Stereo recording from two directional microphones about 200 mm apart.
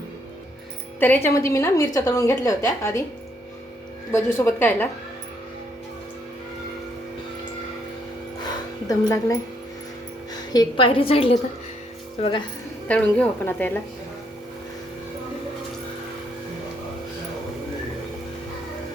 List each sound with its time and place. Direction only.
0.9 s a woman's voice: 10° left (ahead or behind)
4.1 s a woman's voice: 10° left (ahead or behind)
8.9 s a woman's voice: 20° left (ahead or behind)
10.5 s a woman's voice: 25° left (ahead or behind)
12.9 s a woman's voice: 5° left (ahead or behind)